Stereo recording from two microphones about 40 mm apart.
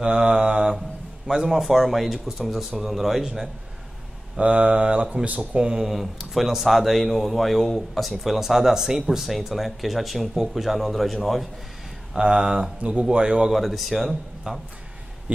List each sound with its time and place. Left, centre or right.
0.0 s mantra: right
1.2 s a man's voice: centre
1.6 s speech: centre
4.4 s speech: right
5.8 s speech: centre
12.2 s speech: centre
12.8 s mantra: right
13.5 s speech: centre